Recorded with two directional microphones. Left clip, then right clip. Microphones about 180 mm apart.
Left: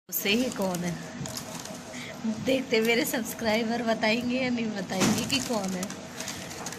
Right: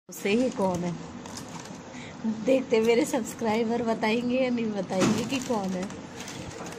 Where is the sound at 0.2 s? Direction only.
10° right (ahead or behind).